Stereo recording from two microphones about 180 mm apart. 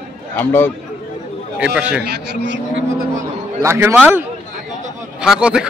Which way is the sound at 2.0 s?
70° right (ahead or behind).